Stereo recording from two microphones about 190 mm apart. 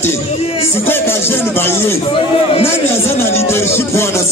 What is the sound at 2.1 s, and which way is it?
Speech, 30° left (ahead or behind).